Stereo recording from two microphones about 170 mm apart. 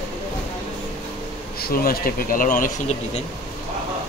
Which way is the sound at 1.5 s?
60° left (ahead or behind).